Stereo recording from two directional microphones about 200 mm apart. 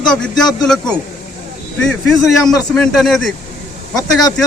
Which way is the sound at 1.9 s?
Centre (ahead or behind).